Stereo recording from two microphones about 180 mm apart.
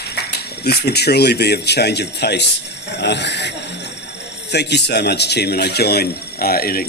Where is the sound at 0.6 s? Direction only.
65° left (ahead or behind).